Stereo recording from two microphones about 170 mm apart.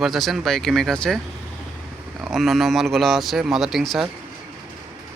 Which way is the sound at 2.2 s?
Centre (ahead or behind).